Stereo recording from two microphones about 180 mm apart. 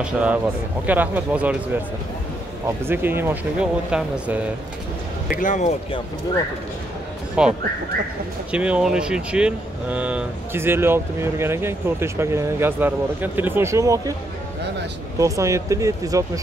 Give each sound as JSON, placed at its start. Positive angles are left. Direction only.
{"t": 0.0, "sound": "speech", "side_deg": -5}
{"t": 2.9, "sound": "speech", "side_deg": -10}
{"t": 5.3, "sound": "speech", "side_deg": 45}
{"t": 7.4, "sound": "speech", "side_deg": -5}
{"t": 15.1, "sound": "speech", "side_deg": -15}